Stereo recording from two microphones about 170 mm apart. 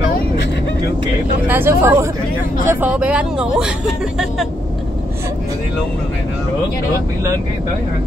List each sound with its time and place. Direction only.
1.5 s speech: 15° right (ahead or behind)